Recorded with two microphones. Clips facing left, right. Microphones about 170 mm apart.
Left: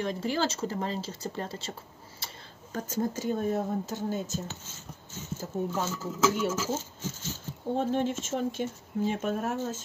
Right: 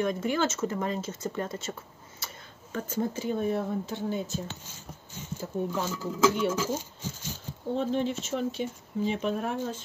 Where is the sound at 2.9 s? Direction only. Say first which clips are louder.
Even; 40° left (ahead or behind).